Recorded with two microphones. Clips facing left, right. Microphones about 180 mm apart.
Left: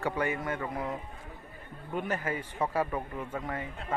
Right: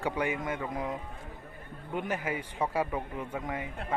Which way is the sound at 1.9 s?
15° right (ahead or behind).